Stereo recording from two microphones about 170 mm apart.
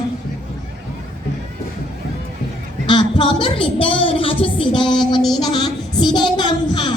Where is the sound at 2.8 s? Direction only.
30° left (ahead or behind).